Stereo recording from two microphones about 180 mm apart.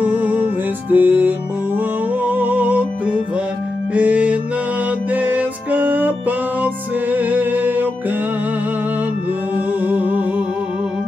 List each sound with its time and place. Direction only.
0.0 s music: 10° right (ahead or behind)
9.8 s music: 10° right (ahead or behind)